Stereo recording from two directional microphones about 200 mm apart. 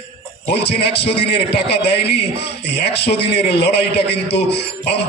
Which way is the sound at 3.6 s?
55° left (ahead or behind).